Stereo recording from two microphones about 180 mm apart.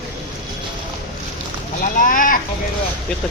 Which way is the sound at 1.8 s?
50° left (ahead or behind).